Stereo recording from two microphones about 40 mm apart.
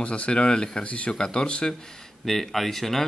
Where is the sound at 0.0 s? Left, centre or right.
Left.